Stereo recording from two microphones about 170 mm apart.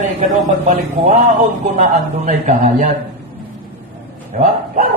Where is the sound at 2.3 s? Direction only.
45° right (ahead or behind).